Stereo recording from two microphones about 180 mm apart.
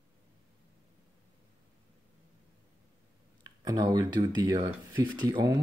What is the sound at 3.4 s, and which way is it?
Speech, 20° right (ahead or behind).